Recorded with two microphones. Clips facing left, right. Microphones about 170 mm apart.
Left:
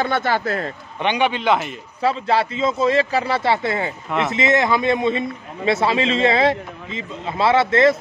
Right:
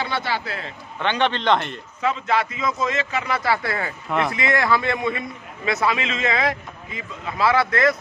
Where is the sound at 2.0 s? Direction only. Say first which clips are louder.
Left 3 dB; 30° left (ahead or behind).